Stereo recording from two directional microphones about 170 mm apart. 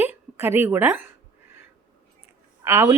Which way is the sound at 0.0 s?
10° right (ahead or behind).